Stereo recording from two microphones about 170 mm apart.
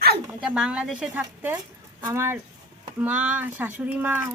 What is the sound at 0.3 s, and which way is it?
Speech, 5° right (ahead or behind).